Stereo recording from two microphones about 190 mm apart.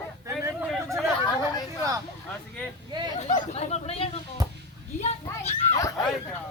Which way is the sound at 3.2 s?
40° left (ahead or behind).